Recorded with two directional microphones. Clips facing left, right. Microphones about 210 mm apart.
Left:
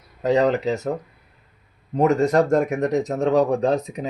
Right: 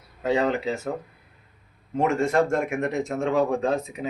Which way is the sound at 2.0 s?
40° left (ahead or behind).